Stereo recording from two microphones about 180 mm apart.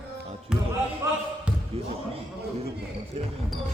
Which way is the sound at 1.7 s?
35° right (ahead or behind).